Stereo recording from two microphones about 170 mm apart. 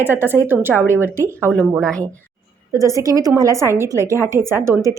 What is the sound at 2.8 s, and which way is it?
A woman's voice, 20° right (ahead or behind).